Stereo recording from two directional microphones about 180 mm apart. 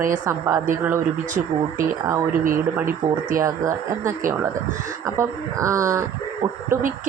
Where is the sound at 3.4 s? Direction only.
15° right (ahead or behind).